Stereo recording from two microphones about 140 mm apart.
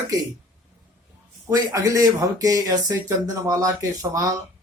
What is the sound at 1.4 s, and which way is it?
Speech, 25° right (ahead or behind).